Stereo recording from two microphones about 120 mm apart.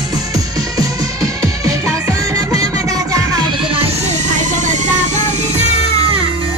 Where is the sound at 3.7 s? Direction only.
55° right (ahead or behind).